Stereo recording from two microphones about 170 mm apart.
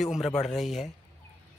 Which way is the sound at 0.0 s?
Centre (ahead or behind).